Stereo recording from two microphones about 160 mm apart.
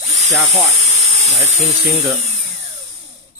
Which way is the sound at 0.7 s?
45° right (ahead or behind).